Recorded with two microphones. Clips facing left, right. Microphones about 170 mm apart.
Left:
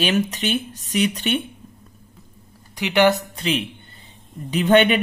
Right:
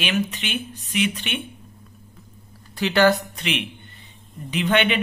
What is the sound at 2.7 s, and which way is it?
Speech, 15° left (ahead or behind).